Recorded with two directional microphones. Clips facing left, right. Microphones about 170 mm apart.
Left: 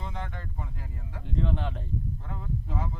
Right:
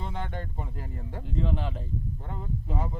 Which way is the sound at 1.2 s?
Centre (ahead or behind).